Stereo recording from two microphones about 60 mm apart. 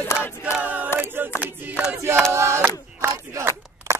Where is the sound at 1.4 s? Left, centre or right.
Right.